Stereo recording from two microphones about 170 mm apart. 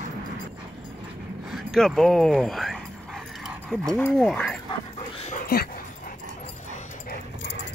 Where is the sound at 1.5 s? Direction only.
Centre (ahead or behind).